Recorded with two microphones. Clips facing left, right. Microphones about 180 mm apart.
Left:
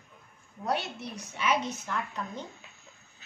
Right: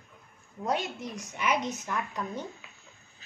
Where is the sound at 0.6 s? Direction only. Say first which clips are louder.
Right 1 dB; 15° right (ahead or behind).